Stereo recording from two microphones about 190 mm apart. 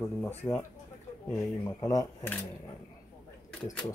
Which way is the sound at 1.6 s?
20° left (ahead or behind).